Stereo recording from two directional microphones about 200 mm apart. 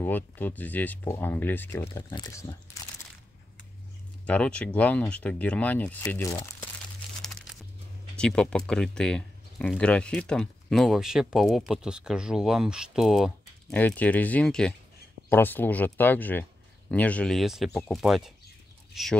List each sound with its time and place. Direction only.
0.0 s speech: 10° left (ahead or behind)
2.7 s crumpling: 15° left (ahead or behind)
4.3 s speech: 5° left (ahead or behind)
8.2 s speech: 5° left (ahead or behind)